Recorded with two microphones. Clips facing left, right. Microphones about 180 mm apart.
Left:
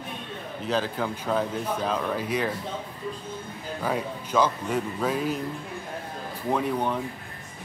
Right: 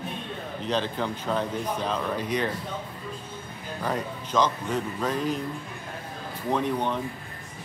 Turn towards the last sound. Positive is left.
turn(degrees=5)  # may be behind; listen again after turning